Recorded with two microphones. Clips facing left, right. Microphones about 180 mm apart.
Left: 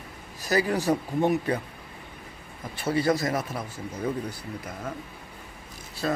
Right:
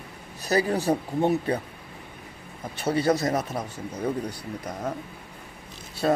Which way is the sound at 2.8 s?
40° right (ahead or behind).